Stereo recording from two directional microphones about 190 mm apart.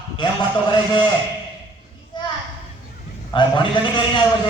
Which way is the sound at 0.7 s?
25° left (ahead or behind).